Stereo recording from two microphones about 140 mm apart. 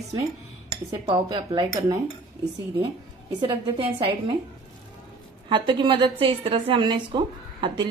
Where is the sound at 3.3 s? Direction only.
35° right (ahead or behind).